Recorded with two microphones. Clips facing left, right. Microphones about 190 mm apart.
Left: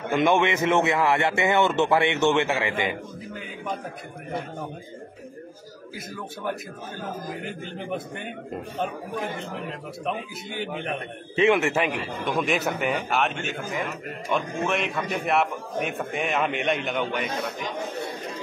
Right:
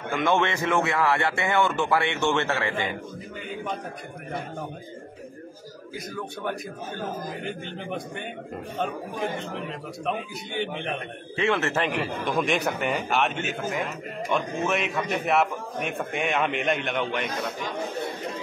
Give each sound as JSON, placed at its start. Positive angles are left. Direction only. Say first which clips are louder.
{"t": 0.1, "sound": "speech", "louder": "left 3 dB", "side_deg": 15}
{"t": 8.8, "sound": "a man's voice", "louder": "right 2 dB", "side_deg": 0}
{"t": 11.3, "sound": "a man's voice", "louder": "left 4 dB", "side_deg": 15}
{"t": 11.9, "sound": "a man's voice", "louder": "right 1 dB", "side_deg": 0}